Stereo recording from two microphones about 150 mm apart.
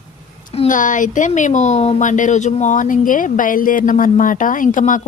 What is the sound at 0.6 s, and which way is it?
Speech, 60° left (ahead or behind).